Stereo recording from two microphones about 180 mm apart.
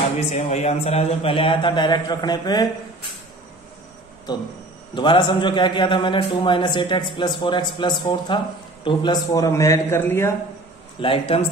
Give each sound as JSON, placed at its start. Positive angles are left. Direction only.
{"t": 0.3, "sound": "a man's voice", "side_deg": 40}
{"t": 4.3, "sound": "a man's voice", "side_deg": 20}
{"t": 11.0, "sound": "speech", "side_deg": 30}